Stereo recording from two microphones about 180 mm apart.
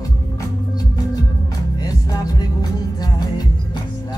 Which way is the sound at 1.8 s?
20° left (ahead or behind).